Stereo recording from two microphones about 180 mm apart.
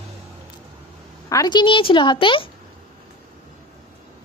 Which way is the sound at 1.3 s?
20° left (ahead or behind).